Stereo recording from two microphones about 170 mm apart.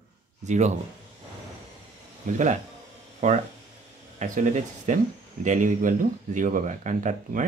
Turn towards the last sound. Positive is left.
turn(degrees=-50)  # may be behind; listen again after turning